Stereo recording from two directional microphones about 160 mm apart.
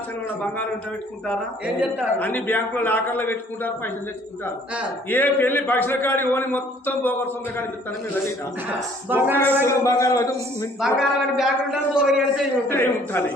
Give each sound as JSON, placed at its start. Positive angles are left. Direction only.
{"t": 1.6, "sound": "speech", "side_deg": -10}
{"t": 2.1, "sound": "a man's voice", "side_deg": 10}
{"t": 5.0, "sound": "a man's voice", "side_deg": 10}
{"t": 9.0, "sound": "speech", "side_deg": -10}
{"t": 9.6, "sound": "a man's voice", "side_deg": 20}
{"t": 10.8, "sound": "a man's voice", "side_deg": 0}
{"t": 12.6, "sound": "a man's voice", "side_deg": 15}